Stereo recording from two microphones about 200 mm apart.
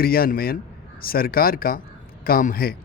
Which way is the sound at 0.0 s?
50° left (ahead or behind).